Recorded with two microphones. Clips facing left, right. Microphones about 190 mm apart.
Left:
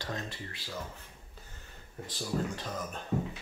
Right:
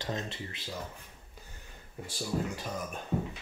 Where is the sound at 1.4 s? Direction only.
15° right (ahead or behind).